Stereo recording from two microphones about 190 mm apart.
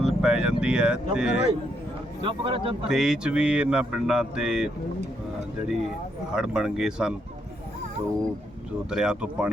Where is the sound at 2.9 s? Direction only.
5° right (ahead or behind).